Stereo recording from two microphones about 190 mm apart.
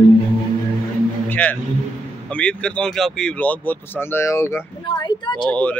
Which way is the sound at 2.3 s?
5° left (ahead or behind).